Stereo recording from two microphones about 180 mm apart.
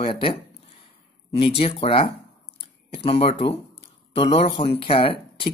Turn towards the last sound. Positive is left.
turn(degrees=30)  # may be behind; listen again after turning